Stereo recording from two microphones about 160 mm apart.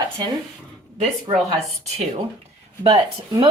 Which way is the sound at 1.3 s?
35° right (ahead or behind).